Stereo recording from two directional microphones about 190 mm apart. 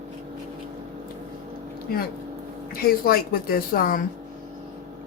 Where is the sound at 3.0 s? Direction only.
50° left (ahead or behind).